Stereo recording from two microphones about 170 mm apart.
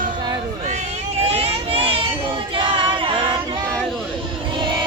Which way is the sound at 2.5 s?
30° right (ahead or behind).